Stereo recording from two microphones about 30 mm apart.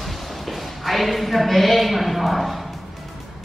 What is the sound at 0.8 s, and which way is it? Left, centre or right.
A woman's voice, centre.